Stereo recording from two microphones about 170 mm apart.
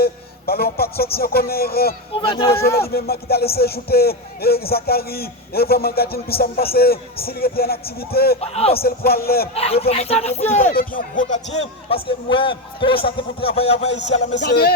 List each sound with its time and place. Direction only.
0.0 s speech: 65° left (ahead or behind)
2.2 s speech: 30° left (ahead or behind)
2.7 s speech: 65° left (ahead or behind)
8.4 s speech: 35° left (ahead or behind)
8.7 s speech: 65° left (ahead or behind)
9.6 s speech: 35° left (ahead or behind)
14.4 s music: 65° left (ahead or behind)